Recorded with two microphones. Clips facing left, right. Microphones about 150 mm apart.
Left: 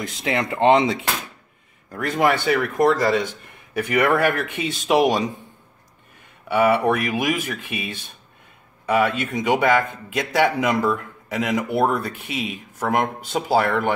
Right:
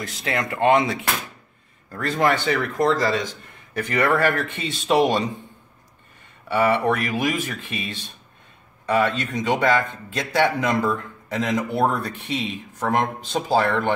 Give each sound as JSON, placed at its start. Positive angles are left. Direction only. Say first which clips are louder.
{"t": 0.0, "sound": "speech", "louder": "left 2 dB", "side_deg": 20}
{"t": 1.9, "sound": "a man's voice", "louder": "left 1 dB", "side_deg": 10}
{"t": 6.5, "sound": "a man's voice", "louder": "left 2 dB", "side_deg": 10}